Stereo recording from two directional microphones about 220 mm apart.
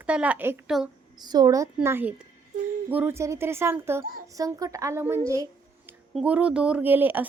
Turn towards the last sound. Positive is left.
turn(degrees=-10)  # may be behind; listen again after turning